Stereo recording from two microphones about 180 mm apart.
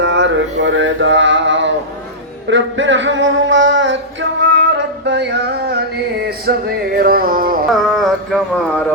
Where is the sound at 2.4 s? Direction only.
90° right; by 7.7 s 50° right (ahead or behind).